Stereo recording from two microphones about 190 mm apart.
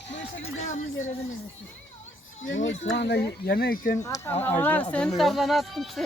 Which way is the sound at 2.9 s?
60° left (ahead or behind).